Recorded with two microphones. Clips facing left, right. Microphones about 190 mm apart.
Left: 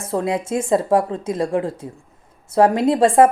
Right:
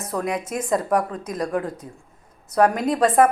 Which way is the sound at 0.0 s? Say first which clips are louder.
Left 4 dB; 30° left (ahead or behind).